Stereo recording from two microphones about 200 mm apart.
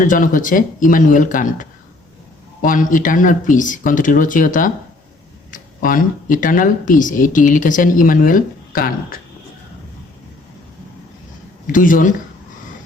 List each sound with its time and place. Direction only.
0.0 s speech: 40° left (ahead or behind)
11.6 s speech: 40° left (ahead or behind)